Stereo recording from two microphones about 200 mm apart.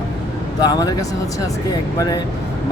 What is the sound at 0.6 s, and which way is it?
Speech, 20° left (ahead or behind).